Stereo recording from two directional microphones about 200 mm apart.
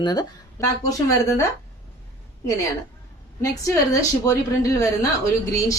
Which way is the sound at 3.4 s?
15° left (ahead or behind).